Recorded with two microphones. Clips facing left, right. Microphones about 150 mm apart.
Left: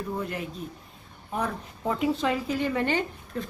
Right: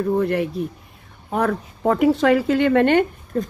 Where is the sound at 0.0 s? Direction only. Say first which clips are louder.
Right 12 dB; 65° right (ahead or behind).